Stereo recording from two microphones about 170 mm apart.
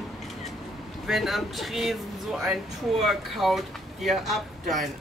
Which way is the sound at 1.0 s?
Centre (ahead or behind).